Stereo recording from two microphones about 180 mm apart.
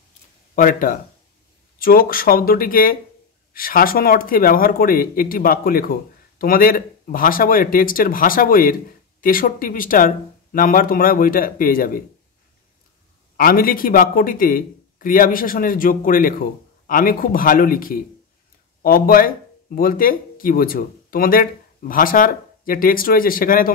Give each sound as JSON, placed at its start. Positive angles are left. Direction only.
{"t": 0.6, "sound": "speech", "side_deg": 50}
{"t": 13.4, "sound": "speech", "side_deg": 55}